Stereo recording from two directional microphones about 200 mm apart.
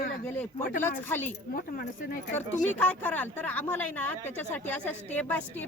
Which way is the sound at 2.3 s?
10° left (ahead or behind).